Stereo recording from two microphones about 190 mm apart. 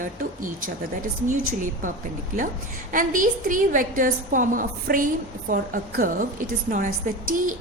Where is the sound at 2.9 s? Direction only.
45° right (ahead or behind).